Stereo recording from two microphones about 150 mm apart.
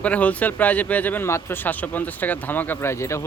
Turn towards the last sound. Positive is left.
turn(degrees=20)  # may be behind; listen again after turning